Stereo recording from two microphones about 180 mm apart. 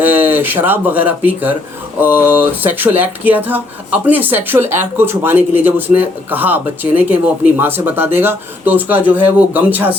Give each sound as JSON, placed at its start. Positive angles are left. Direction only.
{"t": 0.0, "sound": "a man's voice", "side_deg": -10}